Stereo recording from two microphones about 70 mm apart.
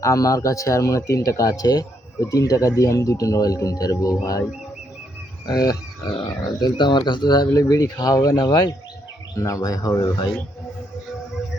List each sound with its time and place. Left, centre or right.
0.0 s speech: left
5.5 s frog: left
6.6 s speech: left
7.5 s speech: left
9.3 s speech: left